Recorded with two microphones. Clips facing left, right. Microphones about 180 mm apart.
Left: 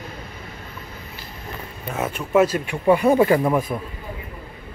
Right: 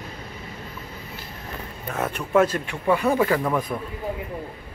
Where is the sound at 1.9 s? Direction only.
5° left (ahead or behind).